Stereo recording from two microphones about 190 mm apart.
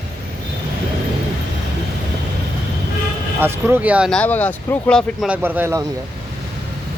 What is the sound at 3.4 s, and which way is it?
Speech, 10° right (ahead or behind).